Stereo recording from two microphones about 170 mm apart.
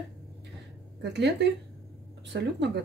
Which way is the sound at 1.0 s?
85° right.